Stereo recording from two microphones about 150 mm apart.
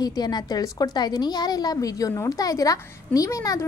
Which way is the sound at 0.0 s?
25° left (ahead or behind).